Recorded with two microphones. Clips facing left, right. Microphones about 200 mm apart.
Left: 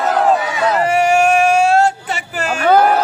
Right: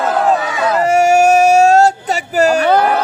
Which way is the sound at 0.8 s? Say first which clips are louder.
Right 4 dB; 45° right (ahead or behind).